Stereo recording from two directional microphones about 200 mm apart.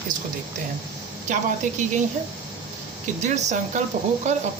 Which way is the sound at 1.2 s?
40° right (ahead or behind).